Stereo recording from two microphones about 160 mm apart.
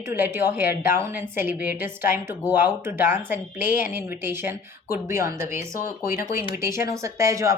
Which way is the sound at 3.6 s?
60° left (ahead or behind).